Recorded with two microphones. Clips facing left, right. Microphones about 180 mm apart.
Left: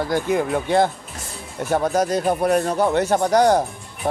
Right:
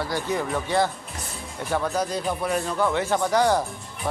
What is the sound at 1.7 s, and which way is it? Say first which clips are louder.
Speech: left 6 dB; 45° left (ahead or behind).